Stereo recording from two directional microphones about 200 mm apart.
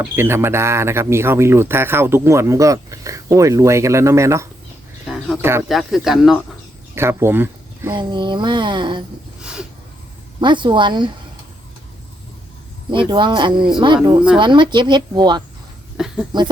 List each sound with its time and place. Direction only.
0.0 s speech: 10° right (ahead or behind)
5.6 s speech: centre (ahead or behind)
6.9 s a woman's voice: 10° right (ahead or behind)
9.4 s a sound: 5° right (ahead or behind)
10.4 s a woman's voice: 25° right (ahead or behind)
12.9 s a woman's voice: 25° right (ahead or behind)